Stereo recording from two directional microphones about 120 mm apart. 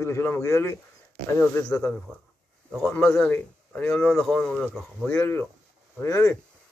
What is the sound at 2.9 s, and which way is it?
Speech, 15° left (ahead or behind).